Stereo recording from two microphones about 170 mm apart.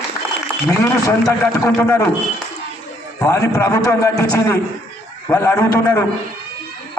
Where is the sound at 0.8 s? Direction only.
15° left (ahead or behind).